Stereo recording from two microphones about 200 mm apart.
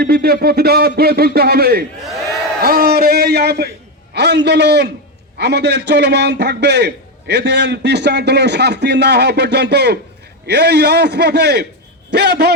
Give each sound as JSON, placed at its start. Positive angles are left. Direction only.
{"t": 0.0, "sound": "a man's voice", "side_deg": -50}